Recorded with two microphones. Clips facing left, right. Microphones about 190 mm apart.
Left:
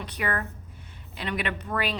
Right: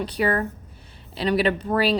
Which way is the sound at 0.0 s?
30° right (ahead or behind).